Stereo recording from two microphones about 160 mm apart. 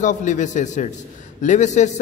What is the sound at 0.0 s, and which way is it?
A man's voice, 50° left (ahead or behind).